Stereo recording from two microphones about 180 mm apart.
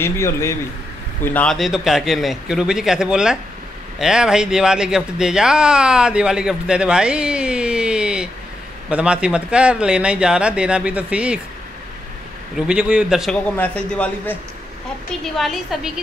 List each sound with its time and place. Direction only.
0.0 s a man's voice: 15° left (ahead or behind); by 11.3 s 5° right (ahead or behind)
12.5 s a man's voice: 5° right (ahead or behind)
15.3 s speech: centre (ahead or behind)